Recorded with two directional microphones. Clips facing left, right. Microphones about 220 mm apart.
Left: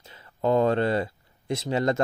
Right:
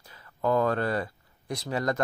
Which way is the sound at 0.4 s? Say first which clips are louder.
Left 3 dB; 25° left (ahead or behind).